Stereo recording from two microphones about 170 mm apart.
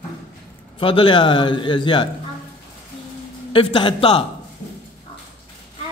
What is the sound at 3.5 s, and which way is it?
Speech, 30° left (ahead or behind).